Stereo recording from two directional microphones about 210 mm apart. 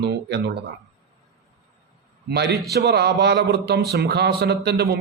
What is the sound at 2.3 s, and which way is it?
Speech, 50° right (ahead or behind).